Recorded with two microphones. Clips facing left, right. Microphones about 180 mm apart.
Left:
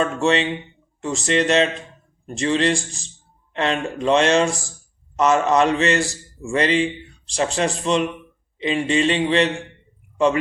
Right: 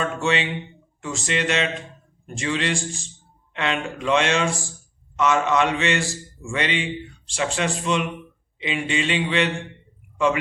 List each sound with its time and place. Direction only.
0.0 s speech: 35° left (ahead or behind)